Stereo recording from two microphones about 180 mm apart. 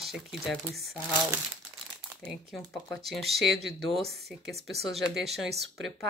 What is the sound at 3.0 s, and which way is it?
Speech, centre (ahead or behind).